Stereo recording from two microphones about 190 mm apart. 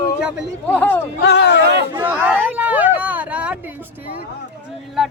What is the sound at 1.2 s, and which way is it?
Speech, 65° left (ahead or behind).